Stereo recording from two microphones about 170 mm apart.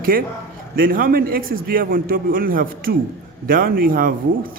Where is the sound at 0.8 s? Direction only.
55° right (ahead or behind).